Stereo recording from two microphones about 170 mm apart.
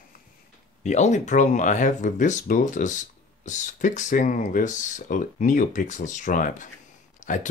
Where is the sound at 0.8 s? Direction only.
45° left (ahead or behind).